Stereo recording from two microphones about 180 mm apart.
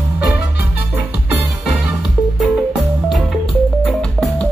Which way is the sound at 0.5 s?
65° left (ahead or behind).